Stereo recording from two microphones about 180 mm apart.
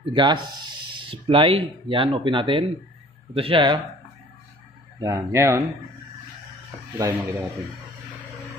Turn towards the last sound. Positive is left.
turn(degrees=-15)  # may be behind; listen again after turning